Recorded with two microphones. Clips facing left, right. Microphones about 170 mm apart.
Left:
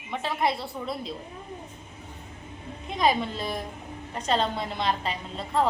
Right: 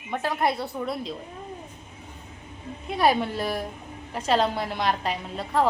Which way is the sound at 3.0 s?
10° right (ahead or behind).